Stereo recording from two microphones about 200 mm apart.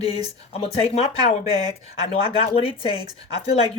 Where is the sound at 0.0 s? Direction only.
30° left (ahead or behind).